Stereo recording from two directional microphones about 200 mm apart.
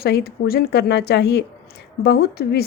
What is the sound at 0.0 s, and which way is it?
A woman's voice, 50° left (ahead or behind).